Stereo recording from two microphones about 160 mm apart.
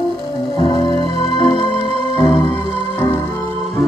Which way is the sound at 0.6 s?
25° left (ahead or behind).